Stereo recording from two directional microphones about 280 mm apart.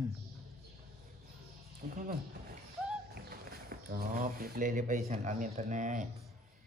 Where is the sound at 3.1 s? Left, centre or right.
Right.